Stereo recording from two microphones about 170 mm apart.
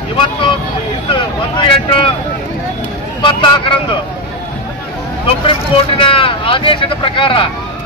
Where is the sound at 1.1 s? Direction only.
30° left (ahead or behind).